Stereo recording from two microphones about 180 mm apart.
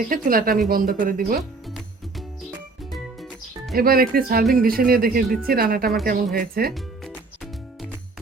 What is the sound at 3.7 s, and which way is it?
Speech, 55° right (ahead or behind).